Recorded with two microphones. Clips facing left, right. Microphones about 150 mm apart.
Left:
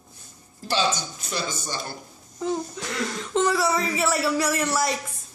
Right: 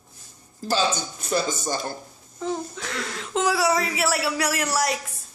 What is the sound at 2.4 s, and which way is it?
Speech, centre (ahead or behind).